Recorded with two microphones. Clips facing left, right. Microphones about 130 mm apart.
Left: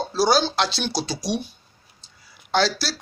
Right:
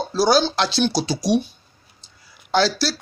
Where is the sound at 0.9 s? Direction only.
40° right (ahead or behind).